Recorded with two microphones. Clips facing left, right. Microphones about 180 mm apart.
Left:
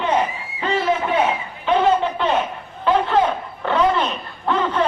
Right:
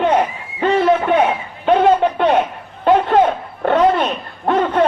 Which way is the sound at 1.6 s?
50° right (ahead or behind).